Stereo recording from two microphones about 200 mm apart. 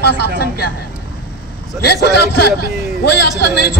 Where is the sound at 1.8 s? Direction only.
55° left (ahead or behind).